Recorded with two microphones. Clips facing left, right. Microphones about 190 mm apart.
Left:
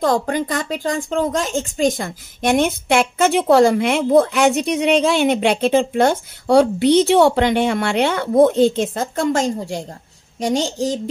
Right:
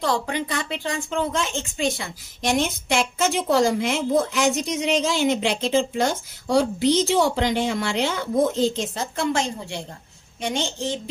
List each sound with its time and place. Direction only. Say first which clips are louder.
0.0 s a woman's voice: left 6 dB; 45° left (ahead or behind)